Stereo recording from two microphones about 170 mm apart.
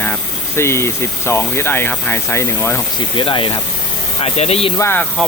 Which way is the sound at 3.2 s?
30° left (ahead or behind).